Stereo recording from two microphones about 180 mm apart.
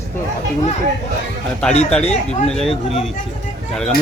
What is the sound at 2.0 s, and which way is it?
Speech, 40° left (ahead or behind).